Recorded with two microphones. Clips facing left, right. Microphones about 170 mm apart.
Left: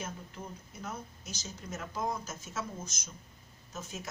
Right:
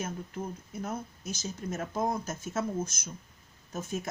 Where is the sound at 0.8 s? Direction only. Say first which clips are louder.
Right 6 dB; 50° right (ahead or behind).